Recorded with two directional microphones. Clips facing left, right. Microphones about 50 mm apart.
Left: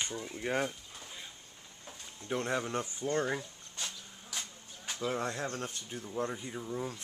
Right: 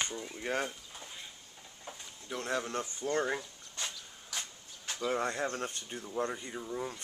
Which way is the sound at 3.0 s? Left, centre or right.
Centre.